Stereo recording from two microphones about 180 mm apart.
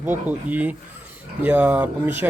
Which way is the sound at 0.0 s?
10° right (ahead or behind).